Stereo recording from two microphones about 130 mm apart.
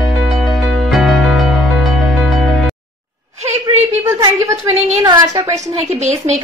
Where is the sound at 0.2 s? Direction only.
Centre (ahead or behind).